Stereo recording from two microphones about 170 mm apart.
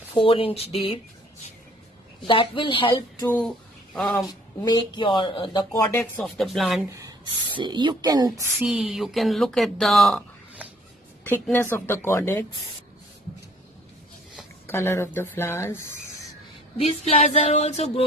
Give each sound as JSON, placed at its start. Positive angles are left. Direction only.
{"t": 0.1, "sound": "speech", "side_deg": 30}
{"t": 2.2, "sound": "speech", "side_deg": 30}
{"t": 2.9, "sound": "speech", "side_deg": 20}
{"t": 3.3, "sound": "speech", "side_deg": 5}
{"t": 4.3, "sound": "speech", "side_deg": 25}
{"t": 5.9, "sound": "speech", "side_deg": 5}
{"t": 6.9, "sound": "speech", "side_deg": -20}
{"t": 8.6, "sound": "speech", "side_deg": -5}
{"t": 11.5, "sound": "speech", "side_deg": 15}
{"t": 14.7, "sound": "speech", "side_deg": 15}
{"t": 16.7, "sound": "speech", "side_deg": 35}